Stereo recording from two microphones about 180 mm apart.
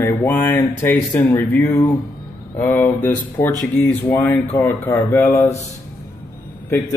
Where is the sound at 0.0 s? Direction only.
10° left (ahead or behind).